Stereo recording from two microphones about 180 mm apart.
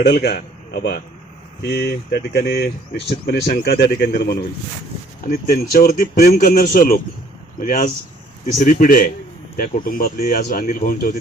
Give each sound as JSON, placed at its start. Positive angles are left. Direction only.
{"t": 0.0, "sound": "a man's voice", "side_deg": 60}